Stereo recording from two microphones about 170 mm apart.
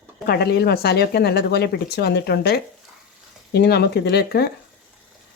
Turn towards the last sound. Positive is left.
turn(degrees=70)  # may be behind; listen again after turning